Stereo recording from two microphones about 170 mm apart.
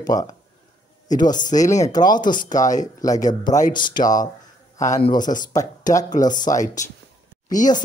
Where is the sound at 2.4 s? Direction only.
50° left (ahead or behind).